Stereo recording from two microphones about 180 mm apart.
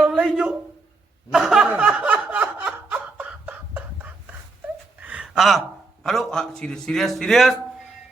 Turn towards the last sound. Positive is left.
turn(degrees=0)  # may be behind; listen again after turning